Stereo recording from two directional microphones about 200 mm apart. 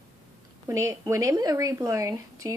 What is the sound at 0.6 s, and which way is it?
Speech, 15° right (ahead or behind).